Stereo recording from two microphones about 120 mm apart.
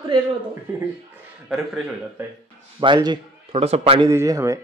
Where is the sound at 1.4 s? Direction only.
5° right (ahead or behind).